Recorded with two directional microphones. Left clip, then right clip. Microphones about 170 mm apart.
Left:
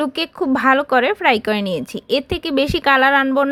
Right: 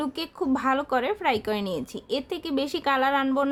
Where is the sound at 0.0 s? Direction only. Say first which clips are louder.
Left 9 dB; 25° left (ahead or behind).